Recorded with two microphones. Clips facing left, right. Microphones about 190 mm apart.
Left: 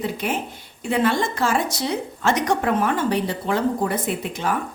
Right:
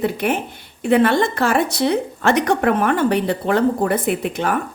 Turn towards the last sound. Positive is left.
turn(degrees=-60)  # may be behind; listen again after turning